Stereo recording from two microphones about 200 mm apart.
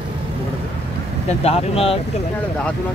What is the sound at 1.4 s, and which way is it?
Speech, 30° left (ahead or behind).